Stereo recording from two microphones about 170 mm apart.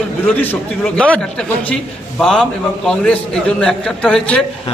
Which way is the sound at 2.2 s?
Centre (ahead or behind).